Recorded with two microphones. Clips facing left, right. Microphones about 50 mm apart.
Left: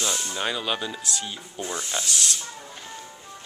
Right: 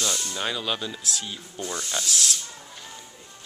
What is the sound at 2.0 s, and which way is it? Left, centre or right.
Speech, centre.